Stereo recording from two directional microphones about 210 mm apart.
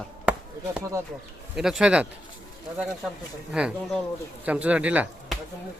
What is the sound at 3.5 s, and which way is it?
Speech, 5° right (ahead or behind).